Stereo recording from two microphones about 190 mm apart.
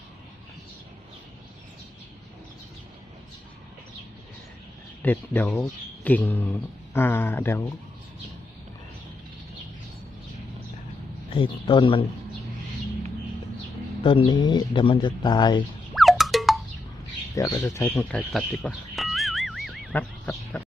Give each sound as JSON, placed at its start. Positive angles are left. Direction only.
{"t": 5.0, "sound": "speech", "side_deg": 10}
{"t": 11.3, "sound": "speech", "side_deg": 25}
{"t": 14.0, "sound": "speech", "side_deg": 25}
{"t": 16.0, "sound": "a sound", "side_deg": 0}
{"t": 17.3, "sound": "speech", "side_deg": 15}
{"t": 17.9, "sound": "music", "side_deg": 5}